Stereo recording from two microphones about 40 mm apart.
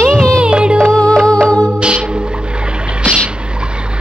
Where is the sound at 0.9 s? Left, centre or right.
Left.